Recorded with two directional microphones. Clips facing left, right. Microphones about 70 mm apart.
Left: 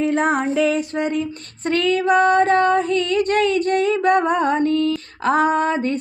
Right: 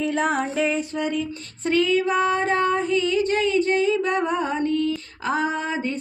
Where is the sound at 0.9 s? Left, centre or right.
Left.